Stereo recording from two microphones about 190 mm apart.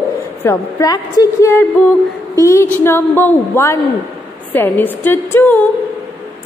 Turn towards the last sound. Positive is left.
turn(degrees=10)  # may be behind; listen again after turning